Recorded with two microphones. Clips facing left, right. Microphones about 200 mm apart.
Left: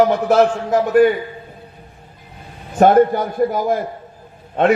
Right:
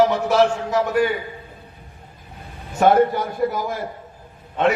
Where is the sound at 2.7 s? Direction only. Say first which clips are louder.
Left 4 dB; 50° left (ahead or behind).